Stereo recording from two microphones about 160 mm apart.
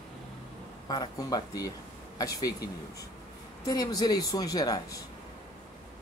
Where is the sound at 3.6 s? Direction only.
25° left (ahead or behind).